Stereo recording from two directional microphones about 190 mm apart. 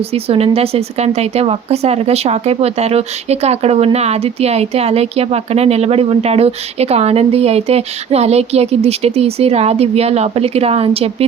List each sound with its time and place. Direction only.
0.1 s speech: 30° right (ahead or behind)